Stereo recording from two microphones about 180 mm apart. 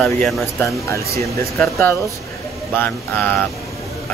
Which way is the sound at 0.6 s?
15° left (ahead or behind).